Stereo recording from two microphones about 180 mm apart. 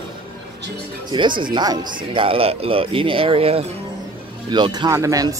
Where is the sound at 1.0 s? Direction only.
25° right (ahead or behind).